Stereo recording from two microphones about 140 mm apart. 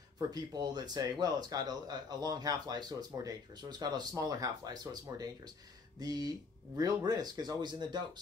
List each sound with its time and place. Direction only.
0.3 s speech: 30° right (ahead or behind)